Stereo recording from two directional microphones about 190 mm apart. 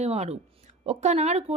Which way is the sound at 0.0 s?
35° right (ahead or behind).